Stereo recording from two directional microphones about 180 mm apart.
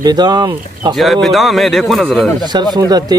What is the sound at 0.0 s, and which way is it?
Speech, 20° right (ahead or behind).